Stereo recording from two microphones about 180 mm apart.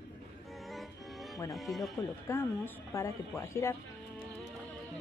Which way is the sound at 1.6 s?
Centre (ahead or behind).